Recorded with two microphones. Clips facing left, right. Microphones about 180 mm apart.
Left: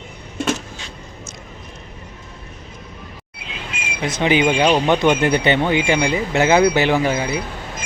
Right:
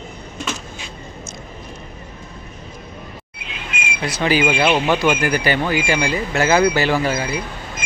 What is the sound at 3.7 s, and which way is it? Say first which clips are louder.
Bird: right 5 dB; 35° left (ahead or behind).